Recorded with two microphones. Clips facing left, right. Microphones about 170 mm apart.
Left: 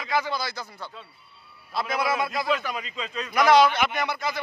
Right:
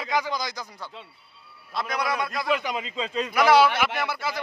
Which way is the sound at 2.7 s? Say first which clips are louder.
Right 4 dB; 25° right (ahead or behind).